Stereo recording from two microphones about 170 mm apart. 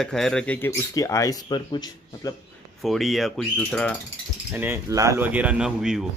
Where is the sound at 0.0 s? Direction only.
5° left (ahead or behind); by 2.3 s 25° left (ahead or behind).